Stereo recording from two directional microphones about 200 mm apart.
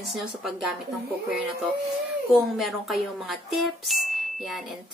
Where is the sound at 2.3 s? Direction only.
Centre (ahead or behind).